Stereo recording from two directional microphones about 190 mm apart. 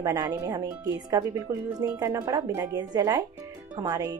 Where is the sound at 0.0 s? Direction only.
15° right (ahead or behind).